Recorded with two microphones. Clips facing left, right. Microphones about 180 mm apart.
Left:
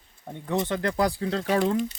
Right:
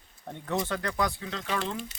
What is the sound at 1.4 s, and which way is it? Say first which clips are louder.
Speech: left 9 dB; 50° left (ahead or behind).